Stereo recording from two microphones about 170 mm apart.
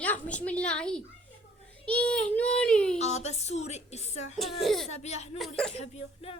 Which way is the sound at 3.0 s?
40° left (ahead or behind).